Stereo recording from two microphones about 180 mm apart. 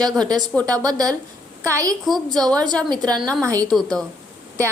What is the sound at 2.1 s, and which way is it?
Speech, centre (ahead or behind).